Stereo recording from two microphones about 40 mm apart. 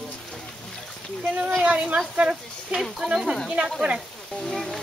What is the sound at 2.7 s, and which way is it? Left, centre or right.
Speech, centre.